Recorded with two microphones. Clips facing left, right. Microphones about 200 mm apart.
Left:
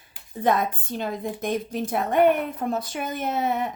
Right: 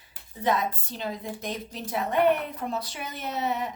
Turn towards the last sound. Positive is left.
turn(degrees=50)  # may be behind; listen again after turning